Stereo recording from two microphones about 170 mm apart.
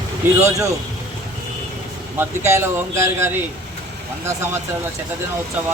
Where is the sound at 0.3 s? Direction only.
15° right (ahead or behind).